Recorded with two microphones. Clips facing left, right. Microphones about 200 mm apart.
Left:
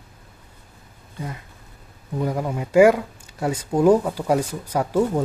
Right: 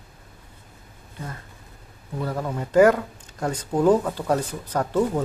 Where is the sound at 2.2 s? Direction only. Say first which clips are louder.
Left 3 dB; 15° left (ahead or behind).